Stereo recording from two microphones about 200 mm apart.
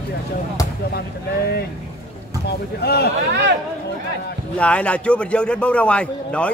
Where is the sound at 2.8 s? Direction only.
50° left (ahead or behind).